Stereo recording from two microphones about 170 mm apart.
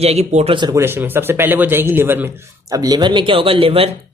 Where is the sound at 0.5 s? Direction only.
25° right (ahead or behind).